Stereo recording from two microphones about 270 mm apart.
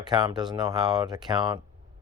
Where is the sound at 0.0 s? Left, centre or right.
Centre.